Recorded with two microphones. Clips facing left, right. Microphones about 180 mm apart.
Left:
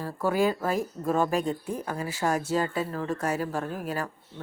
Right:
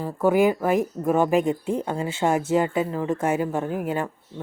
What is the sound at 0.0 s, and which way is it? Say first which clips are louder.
Speech: right 6 dB; 20° right (ahead or behind).